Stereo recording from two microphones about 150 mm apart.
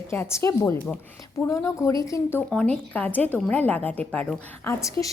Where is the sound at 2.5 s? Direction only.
5° left (ahead or behind).